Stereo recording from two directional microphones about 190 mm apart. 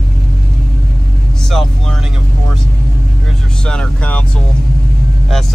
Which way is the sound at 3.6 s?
5° left (ahead or behind).